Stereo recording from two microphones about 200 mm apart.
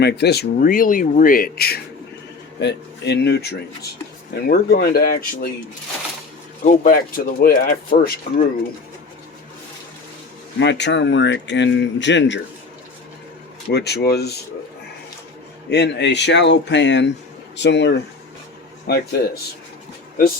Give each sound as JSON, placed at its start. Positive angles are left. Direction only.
{"t": 0.0, "sound": "speech", "side_deg": 55}
{"t": 6.8, "sound": "speech", "side_deg": 45}
{"t": 10.6, "sound": "speech", "side_deg": 60}
{"t": 13.7, "sound": "speech", "side_deg": 55}
{"t": 15.7, "sound": "speech", "side_deg": 60}
{"t": 18.9, "sound": "speech", "side_deg": 50}